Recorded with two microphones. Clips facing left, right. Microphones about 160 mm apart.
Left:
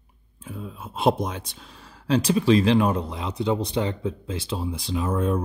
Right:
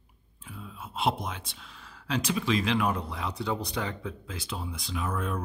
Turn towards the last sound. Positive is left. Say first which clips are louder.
# left 8 dB
turn(degrees=30)  # may be behind; listen again after turning